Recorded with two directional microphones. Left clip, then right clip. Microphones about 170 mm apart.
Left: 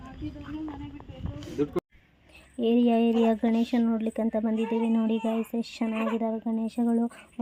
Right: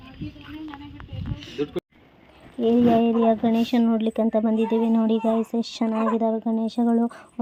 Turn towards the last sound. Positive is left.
turn(degrees=-5)  # may be behind; listen again after turning